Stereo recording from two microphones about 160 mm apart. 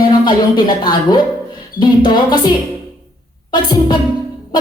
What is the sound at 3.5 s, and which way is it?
Speech, 25° left (ahead or behind).